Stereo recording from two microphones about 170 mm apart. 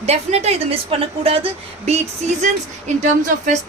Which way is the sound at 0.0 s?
40° right (ahead or behind).